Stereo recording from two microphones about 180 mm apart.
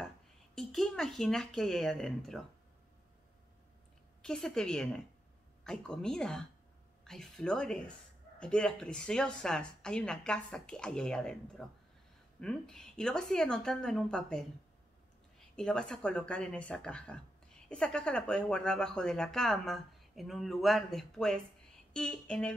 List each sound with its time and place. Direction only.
0.6 s speech: centre (ahead or behind)
4.2 s speech: centre (ahead or behind)
15.5 s speech: 5° left (ahead or behind)